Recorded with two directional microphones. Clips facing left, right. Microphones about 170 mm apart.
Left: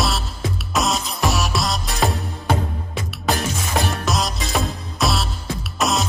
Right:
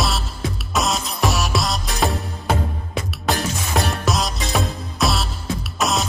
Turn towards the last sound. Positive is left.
turn(degrees=0)  # may be behind; listen again after turning